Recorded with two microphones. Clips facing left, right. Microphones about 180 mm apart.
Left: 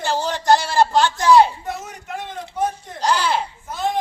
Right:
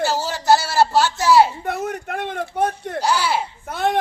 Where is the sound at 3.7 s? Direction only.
65° right (ahead or behind).